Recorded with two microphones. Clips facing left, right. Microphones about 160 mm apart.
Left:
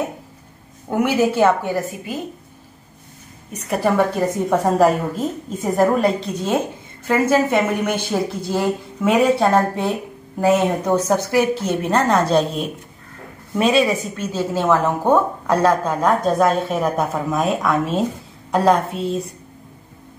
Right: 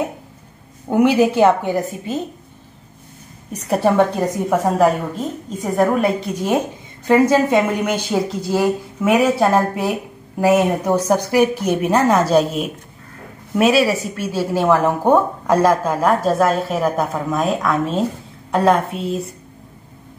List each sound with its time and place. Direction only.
0.8 s speech: 20° right (ahead or behind)
3.5 s a woman's voice: 30° right (ahead or behind)
4.5 s a woman's voice: centre (ahead or behind)
13.6 s a woman's voice: 5° right (ahead or behind)